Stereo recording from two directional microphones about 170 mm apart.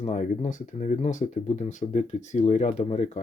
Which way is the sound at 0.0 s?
45° left (ahead or behind).